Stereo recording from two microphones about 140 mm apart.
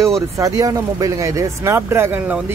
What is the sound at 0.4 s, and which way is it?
Speech, 25° right (ahead or behind).